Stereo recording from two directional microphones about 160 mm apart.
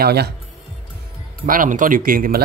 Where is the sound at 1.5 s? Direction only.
55° right (ahead or behind).